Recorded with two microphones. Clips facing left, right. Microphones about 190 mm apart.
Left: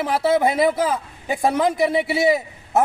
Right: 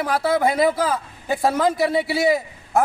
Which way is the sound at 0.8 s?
20° left (ahead or behind).